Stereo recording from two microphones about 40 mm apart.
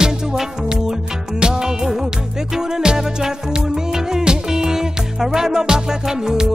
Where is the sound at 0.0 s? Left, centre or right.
Centre.